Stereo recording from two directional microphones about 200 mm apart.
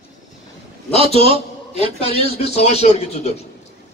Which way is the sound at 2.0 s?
30° left (ahead or behind).